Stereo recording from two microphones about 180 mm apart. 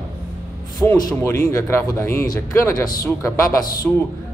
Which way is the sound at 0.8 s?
15° left (ahead or behind).